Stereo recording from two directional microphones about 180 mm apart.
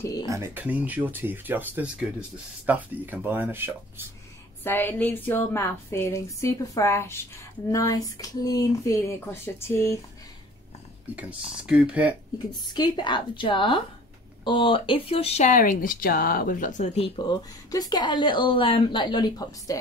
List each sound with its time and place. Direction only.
0.0 s speech: 20° left (ahead or behind)
0.3 s speech: 15° right (ahead or behind)
4.6 s a woman's voice: 10° left (ahead or behind)
11.1 s speech: 5° right (ahead or behind)
12.6 s speech: 25° left (ahead or behind)